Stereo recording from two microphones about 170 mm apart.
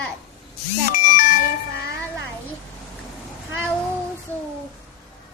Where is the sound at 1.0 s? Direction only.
55° left (ahead or behind).